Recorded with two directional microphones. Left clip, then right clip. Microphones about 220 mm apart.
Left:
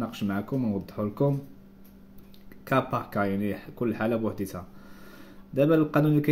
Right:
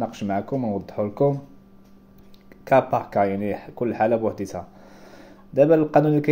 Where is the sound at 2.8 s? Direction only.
20° left (ahead or behind).